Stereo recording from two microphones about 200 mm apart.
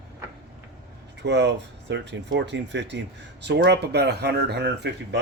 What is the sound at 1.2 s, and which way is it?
Speech, 60° right (ahead or behind).